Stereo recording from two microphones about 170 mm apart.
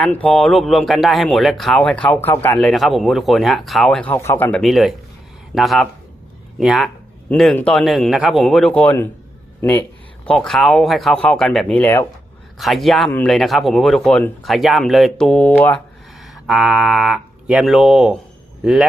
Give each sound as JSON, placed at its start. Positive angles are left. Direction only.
{"t": 0.0, "sound": "speech", "side_deg": 10}
{"t": 4.1, "sound": "speech", "side_deg": 15}
{"t": 4.6, "sound": "speech", "side_deg": 0}
{"t": 10.2, "sound": "speech", "side_deg": 5}
{"t": 12.5, "sound": "speech", "side_deg": 0}
{"t": 16.2, "sound": "speech", "side_deg": 0}